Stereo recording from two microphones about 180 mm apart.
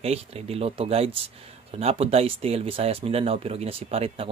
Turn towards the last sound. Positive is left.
turn(degrees=-30)  # may be behind; listen again after turning